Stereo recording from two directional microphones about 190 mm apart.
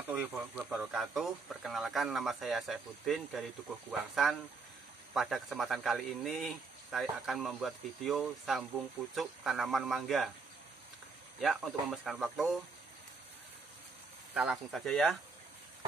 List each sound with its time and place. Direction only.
0.0 s snake: 10° right (ahead or behind)
0.3 s speech: 5° right (ahead or behind)
11.9 s speech: centre (ahead or behind)
14.3 s speech: 5° right (ahead or behind)